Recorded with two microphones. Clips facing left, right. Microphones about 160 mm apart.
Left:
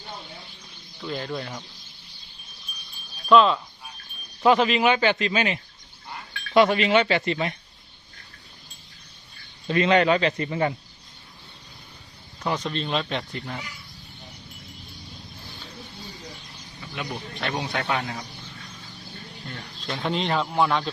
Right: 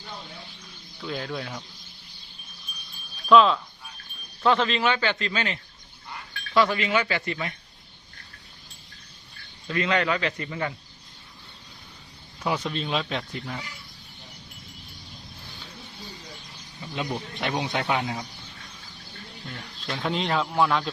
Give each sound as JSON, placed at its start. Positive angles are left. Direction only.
{"t": 1.0, "sound": "a man's voice", "side_deg": 0}
{"t": 3.2, "sound": "a man's voice", "side_deg": 0}
{"t": 4.4, "sound": "speech", "side_deg": 10}
{"t": 6.7, "sound": "speech", "side_deg": 25}
{"t": 9.6, "sound": "speech", "side_deg": 25}
{"t": 12.4, "sound": "a man's voice", "side_deg": -5}
{"t": 16.9, "sound": "speech", "side_deg": -20}
{"t": 19.5, "sound": "a man's voice", "side_deg": 0}